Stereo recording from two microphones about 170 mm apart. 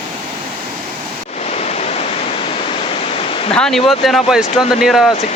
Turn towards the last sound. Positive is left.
turn(degrees=0)  # may be behind; listen again after turning